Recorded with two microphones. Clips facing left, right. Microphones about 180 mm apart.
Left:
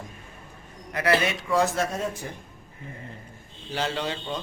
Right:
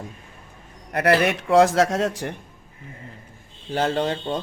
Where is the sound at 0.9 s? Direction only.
60° right (ahead or behind); by 2.3 s 85° right.